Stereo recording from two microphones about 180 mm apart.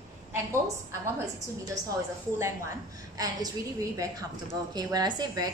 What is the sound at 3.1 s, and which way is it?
A woman's voice, 20° right (ahead or behind).